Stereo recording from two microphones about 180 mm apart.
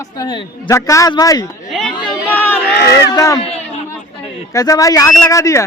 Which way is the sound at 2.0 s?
25° left (ahead or behind).